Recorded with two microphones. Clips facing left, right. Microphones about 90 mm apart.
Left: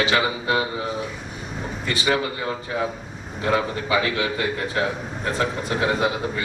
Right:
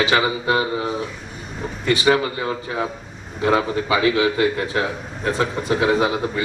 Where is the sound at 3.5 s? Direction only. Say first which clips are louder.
Right 3 dB; 10° right (ahead or behind).